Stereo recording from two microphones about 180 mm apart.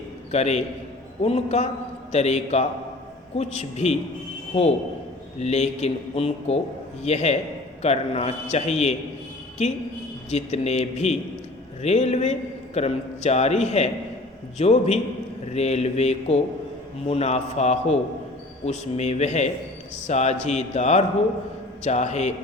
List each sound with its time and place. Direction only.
0.3 s a man's voice: 35° left (ahead or behind)